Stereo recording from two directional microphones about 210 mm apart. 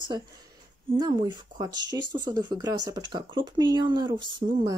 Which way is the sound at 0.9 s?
20° right (ahead or behind).